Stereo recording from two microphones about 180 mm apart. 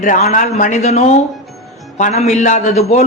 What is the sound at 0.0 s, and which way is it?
A man's voice, 40° left (ahead or behind).